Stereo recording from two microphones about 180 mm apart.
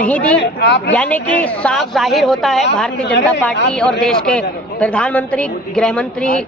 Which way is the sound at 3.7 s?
5° left (ahead or behind).